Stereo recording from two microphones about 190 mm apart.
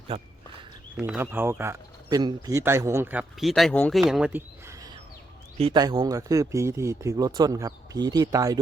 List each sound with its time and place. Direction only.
0.1 s speech: 30° right (ahead or behind)
0.9 s speech: 10° right (ahead or behind)